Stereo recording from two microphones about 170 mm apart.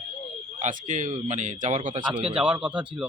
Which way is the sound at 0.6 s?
50° right (ahead or behind).